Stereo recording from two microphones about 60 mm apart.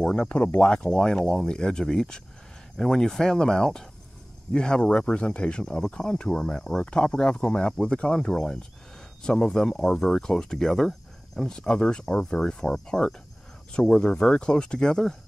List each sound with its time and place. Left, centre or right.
0.0 s speech: centre